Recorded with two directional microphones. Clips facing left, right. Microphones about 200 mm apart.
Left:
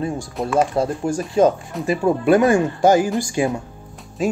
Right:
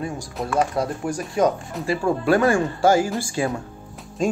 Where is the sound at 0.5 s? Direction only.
25° left (ahead or behind).